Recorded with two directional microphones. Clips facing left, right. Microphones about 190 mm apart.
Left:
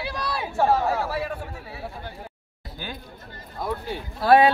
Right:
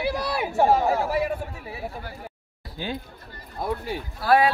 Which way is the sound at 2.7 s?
25° right (ahead or behind).